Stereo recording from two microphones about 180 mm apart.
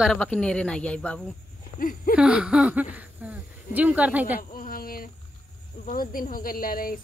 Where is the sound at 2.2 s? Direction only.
5° right (ahead or behind).